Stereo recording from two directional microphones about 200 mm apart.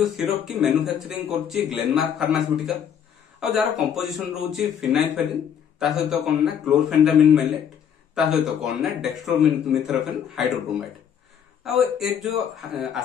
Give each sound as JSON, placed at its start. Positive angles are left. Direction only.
{"t": 0.0, "sound": "a man's voice", "side_deg": 0}